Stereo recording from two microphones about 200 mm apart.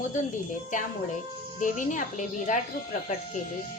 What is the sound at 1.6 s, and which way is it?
Speech, 40° left (ahead or behind).